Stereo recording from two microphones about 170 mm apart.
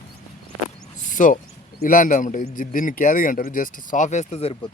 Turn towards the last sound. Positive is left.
turn(degrees=40)  # may be behind; listen again after turning